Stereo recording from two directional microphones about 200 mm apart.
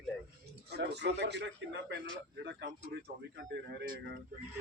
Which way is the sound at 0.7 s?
55° right (ahead or behind).